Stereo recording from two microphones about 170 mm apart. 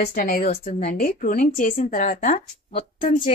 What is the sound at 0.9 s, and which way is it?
Speech, 55° left (ahead or behind).